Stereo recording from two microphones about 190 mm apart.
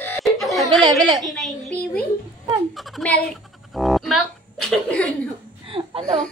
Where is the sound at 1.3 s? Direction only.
Centre (ahead or behind).